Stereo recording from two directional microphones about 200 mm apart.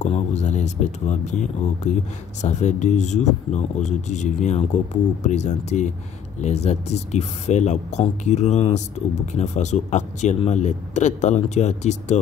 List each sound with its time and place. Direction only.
0.0 s a man's voice: 35° left (ahead or behind)